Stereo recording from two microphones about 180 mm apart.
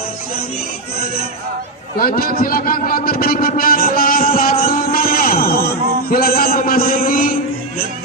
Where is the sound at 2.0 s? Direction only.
55° left (ahead or behind).